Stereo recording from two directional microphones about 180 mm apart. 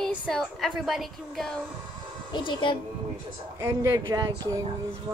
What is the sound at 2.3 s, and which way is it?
Speech, 25° left (ahead or behind).